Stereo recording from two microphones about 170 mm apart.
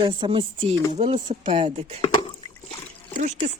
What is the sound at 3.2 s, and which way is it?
Speech, 45° right (ahead or behind).